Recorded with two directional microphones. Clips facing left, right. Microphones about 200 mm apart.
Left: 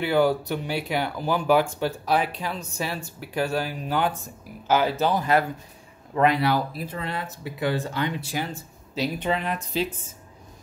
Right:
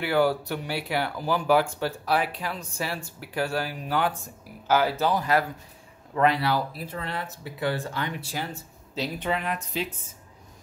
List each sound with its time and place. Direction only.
0.0 s speech: 20° left (ahead or behind)